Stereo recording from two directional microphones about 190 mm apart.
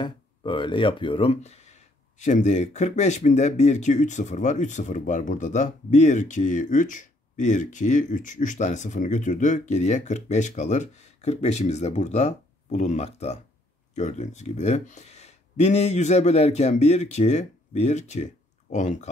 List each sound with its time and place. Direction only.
0.0 s speech: 25° left (ahead or behind)